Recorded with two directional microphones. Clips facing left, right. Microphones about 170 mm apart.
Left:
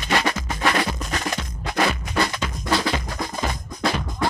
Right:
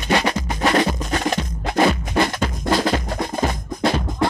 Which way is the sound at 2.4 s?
45° right (ahead or behind).